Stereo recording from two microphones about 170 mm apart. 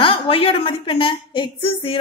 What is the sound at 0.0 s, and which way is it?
A woman's voice, 35° left (ahead or behind).